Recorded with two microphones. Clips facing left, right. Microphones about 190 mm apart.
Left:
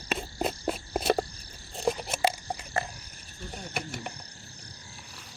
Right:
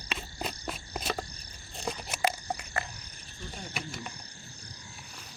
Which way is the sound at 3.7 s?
60° left (ahead or behind).